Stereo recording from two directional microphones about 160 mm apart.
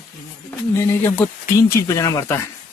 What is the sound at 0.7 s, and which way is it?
Speech, 15° left (ahead or behind).